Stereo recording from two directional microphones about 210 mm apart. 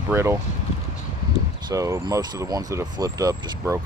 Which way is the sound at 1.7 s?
15° right (ahead or behind).